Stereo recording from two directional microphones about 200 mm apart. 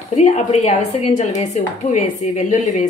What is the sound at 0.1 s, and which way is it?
Speech, 35° left (ahead or behind).